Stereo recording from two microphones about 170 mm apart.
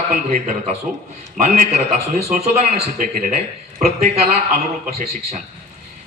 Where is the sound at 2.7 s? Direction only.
55° right (ahead or behind).